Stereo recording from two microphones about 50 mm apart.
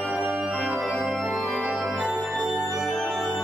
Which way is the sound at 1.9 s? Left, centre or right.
Right.